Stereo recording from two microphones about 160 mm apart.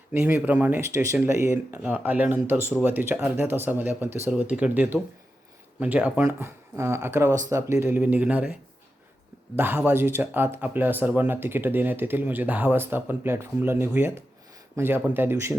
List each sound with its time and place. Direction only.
0.1 s speech: 10° right (ahead or behind)
9.6 s speech: 15° right (ahead or behind)